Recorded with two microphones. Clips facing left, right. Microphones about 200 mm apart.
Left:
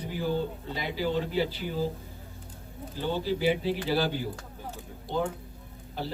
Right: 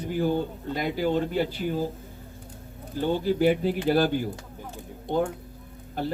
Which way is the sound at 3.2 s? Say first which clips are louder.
Right 4 dB; 50° right (ahead or behind).